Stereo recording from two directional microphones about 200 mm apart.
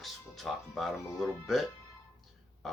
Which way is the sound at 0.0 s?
Centre (ahead or behind).